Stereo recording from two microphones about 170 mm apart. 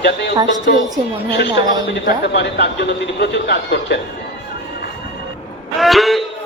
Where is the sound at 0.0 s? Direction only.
85° left.